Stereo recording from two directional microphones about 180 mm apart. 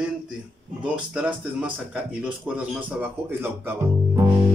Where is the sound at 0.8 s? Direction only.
5° right (ahead or behind).